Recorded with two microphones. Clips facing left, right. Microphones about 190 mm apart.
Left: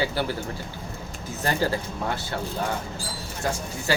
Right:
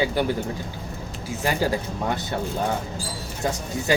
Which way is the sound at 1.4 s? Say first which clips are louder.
Right 1 dB; 15° right (ahead or behind).